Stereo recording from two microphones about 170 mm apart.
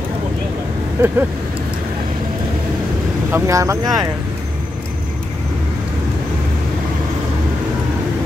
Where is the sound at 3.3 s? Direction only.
15° right (ahead or behind).